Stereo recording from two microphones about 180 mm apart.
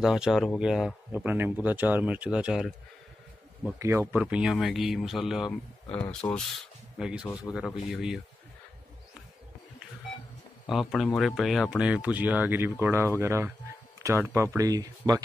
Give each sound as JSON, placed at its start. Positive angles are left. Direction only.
{"t": 0.0, "sound": "speech", "side_deg": -5}
{"t": 3.8, "sound": "speech", "side_deg": -15}
{"t": 5.9, "sound": "speech", "side_deg": 10}
{"t": 6.6, "sound": "speech", "side_deg": -5}
{"t": 10.7, "sound": "speech", "side_deg": 0}
{"t": 13.9, "sound": "a sound", "side_deg": -15}
{"t": 14.3, "sound": "speech", "side_deg": -15}